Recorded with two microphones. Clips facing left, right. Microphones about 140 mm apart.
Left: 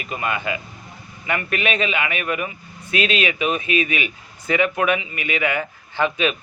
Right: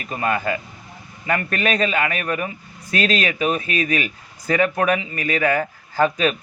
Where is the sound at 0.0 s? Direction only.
35° right (ahead or behind).